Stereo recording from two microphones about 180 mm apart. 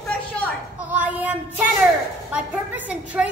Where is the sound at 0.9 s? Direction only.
10° right (ahead or behind).